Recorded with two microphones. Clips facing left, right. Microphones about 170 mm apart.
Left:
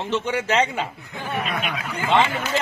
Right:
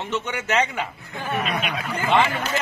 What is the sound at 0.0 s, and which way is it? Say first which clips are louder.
A man's voice: left 4 dB; 30° left (ahead or behind).